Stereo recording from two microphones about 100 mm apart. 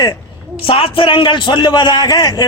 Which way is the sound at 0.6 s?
70° left (ahead or behind).